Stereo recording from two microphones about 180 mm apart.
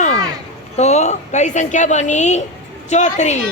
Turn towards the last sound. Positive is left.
turn(degrees=40)  # may be behind; listen again after turning